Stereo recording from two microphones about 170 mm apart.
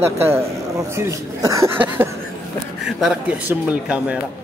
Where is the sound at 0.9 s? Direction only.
15° right (ahead or behind).